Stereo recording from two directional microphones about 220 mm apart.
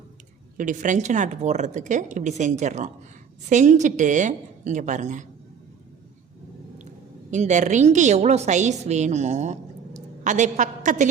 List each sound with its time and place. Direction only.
0.5 s a woman's voice: 35° right (ahead or behind)
7.3 s a woman's voice: 35° right (ahead or behind)